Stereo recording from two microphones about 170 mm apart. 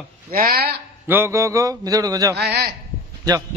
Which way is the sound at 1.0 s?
15° right (ahead or behind).